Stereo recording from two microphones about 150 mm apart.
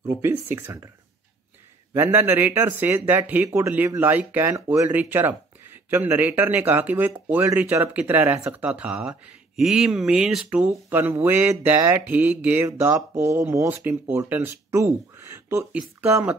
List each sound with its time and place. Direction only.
0.1 s speech: 15° right (ahead or behind)
2.0 s speech: 15° right (ahead or behind)